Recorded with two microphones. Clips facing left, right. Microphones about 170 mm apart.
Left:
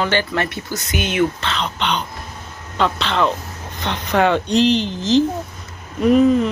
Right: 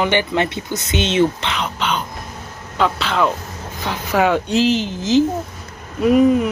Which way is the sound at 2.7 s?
5° right (ahead or behind).